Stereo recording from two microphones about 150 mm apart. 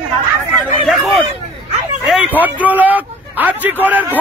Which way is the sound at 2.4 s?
10° right (ahead or behind).